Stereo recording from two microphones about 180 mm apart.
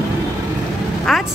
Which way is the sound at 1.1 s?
Centre (ahead or behind).